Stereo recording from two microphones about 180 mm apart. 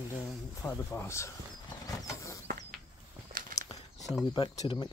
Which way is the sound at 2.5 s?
65° right (ahead or behind).